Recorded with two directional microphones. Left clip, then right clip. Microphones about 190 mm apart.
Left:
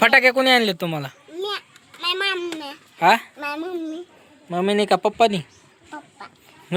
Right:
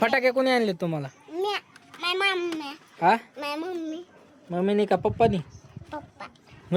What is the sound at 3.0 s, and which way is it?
Speech, 5° left (ahead or behind).